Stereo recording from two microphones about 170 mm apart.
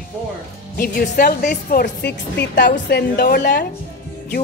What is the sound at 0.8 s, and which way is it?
Speech, 60° left (ahead or behind).